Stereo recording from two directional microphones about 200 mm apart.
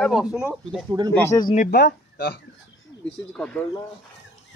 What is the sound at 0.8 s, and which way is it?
Speech, 20° right (ahead or behind).